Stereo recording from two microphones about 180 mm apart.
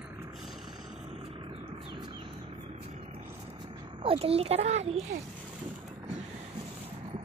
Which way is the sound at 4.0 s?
30° right (ahead or behind).